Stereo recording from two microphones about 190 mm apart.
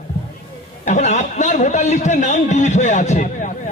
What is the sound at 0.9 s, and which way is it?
A man's voice, 40° left (ahead or behind).